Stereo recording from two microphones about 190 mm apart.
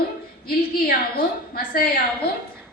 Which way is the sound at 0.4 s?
55° left (ahead or behind).